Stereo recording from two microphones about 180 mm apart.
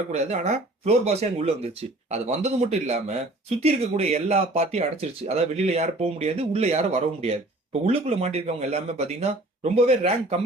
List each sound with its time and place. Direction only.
0.1 s speech: 40° right (ahead or behind)